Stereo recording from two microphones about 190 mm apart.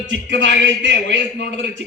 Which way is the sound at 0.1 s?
75° right (ahead or behind).